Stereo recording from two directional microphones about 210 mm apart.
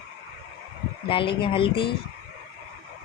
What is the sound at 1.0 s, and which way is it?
Speech, 25° left (ahead or behind).